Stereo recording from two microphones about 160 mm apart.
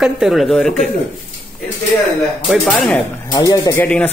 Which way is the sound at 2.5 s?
Centre (ahead or behind).